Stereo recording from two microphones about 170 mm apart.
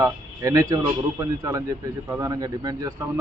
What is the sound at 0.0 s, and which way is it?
Speech, 20° right (ahead or behind).